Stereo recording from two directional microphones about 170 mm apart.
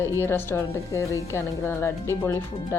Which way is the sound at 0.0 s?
15° left (ahead or behind).